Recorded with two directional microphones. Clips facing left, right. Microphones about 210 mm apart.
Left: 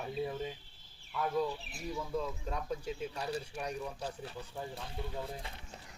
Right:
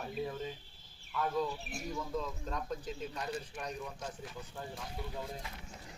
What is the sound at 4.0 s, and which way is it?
Speech, 35° left (ahead or behind).